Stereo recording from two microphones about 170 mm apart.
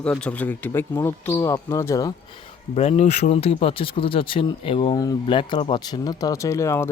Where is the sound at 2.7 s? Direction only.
40° left (ahead or behind).